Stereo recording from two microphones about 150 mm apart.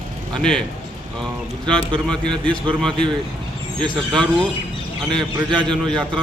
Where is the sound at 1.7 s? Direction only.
5° left (ahead or behind).